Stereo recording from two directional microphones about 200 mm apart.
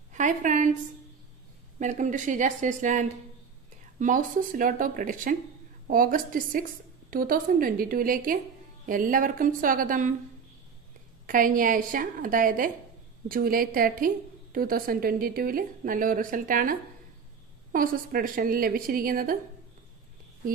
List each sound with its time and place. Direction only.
0.1 s a sound: 40° right (ahead or behind)
1.8 s a woman's voice: 40° right (ahead or behind)
11.2 s a woman's voice: 40° right (ahead or behind)
17.7 s a woman's voice: 45° right (ahead or behind)